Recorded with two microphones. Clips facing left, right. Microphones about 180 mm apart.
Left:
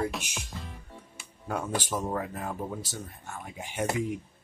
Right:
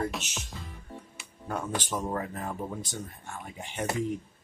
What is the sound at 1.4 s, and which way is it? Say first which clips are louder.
Speech: left 1 dB; 10° left (ahead or behind).